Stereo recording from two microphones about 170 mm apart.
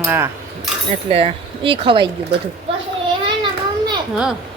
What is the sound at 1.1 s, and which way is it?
Speech, 35° right (ahead or behind).